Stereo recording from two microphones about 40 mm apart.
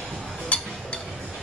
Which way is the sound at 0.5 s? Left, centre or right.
Left.